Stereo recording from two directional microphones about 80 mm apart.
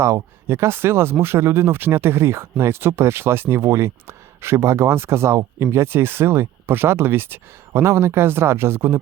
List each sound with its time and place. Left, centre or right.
0.0 s speech: right